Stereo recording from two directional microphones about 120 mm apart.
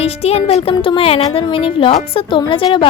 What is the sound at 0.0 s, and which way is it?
Speech, 60° left (ahead or behind).